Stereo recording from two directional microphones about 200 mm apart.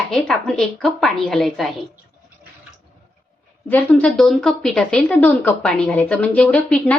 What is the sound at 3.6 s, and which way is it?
Speech, 5° left (ahead or behind).